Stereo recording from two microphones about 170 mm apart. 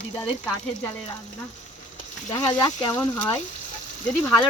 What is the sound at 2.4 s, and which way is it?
Speech, 25° left (ahead or behind).